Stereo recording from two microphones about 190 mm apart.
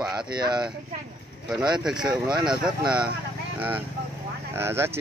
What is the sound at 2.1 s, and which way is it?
Speech, 25° right (ahead or behind).